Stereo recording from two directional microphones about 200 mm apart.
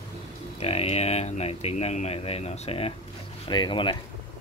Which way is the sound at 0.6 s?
30° left (ahead or behind).